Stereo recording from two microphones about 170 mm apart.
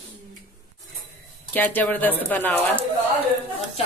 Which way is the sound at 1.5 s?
10° left (ahead or behind).